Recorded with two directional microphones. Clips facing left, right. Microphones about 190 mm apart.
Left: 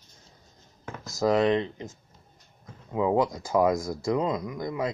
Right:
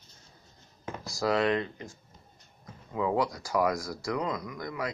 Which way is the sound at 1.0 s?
20° left (ahead or behind).